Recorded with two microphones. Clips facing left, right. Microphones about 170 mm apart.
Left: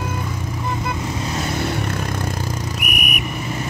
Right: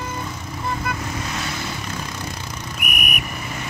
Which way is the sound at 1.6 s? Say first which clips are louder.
Left 7 dB; 60° left (ahead or behind).